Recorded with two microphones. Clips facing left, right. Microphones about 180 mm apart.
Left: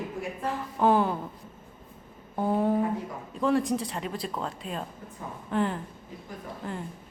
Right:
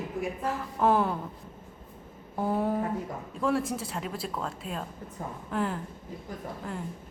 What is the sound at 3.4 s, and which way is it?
Speech, centre (ahead or behind).